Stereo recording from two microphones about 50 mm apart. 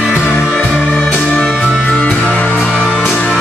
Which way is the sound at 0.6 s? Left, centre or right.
Left.